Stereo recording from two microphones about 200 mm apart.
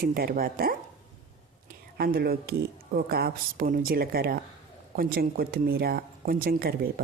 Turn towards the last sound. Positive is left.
turn(degrees=-50)  # may be behind; listen again after turning